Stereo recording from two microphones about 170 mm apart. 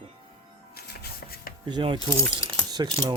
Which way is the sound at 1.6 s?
25° right (ahead or behind).